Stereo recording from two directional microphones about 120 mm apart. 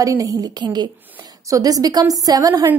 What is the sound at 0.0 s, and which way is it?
A woman's voice, 30° right (ahead or behind).